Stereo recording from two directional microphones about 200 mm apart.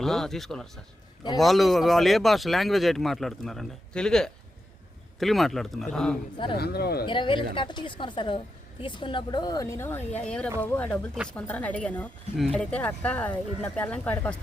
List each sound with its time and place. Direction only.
0.0 s speech: centre (ahead or behind)
6.3 s speech: 25° left (ahead or behind)
6.6 s speech: 50° left (ahead or behind)
7.0 s speech: 25° left (ahead or behind); by 14.3 s 10° left (ahead or behind)